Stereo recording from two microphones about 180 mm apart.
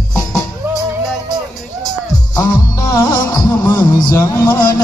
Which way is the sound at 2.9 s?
20° left (ahead or behind).